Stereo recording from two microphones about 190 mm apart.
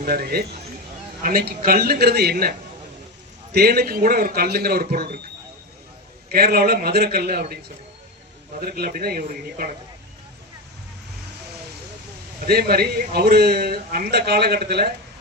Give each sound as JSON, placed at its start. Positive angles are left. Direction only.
{"t": 0.0, "sound": "a man's voice", "side_deg": -55}
{"t": 6.2, "sound": "a man's voice", "side_deg": -55}
{"t": 8.5, "sound": "a man's voice", "side_deg": -50}
{"t": 12.4, "sound": "a man's voice", "side_deg": -55}